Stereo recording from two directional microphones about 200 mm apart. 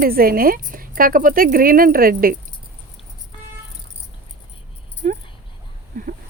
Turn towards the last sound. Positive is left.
turn(degrees=-40)  # may be behind; listen again after turning